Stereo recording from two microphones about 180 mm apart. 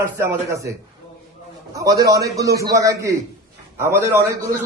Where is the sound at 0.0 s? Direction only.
15° right (ahead or behind).